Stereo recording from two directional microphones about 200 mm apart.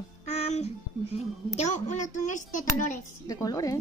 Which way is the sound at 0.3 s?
30° left (ahead or behind).